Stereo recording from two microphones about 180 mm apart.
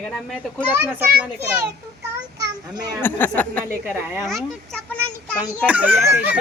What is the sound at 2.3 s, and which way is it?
Speech, 20° right (ahead or behind).